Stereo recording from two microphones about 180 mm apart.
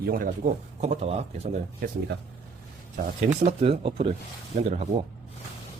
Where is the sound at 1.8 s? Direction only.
50° right (ahead or behind).